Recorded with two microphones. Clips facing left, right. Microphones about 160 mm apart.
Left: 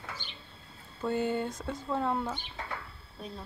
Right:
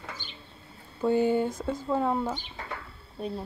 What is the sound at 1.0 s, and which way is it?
Speech, 10° right (ahead or behind).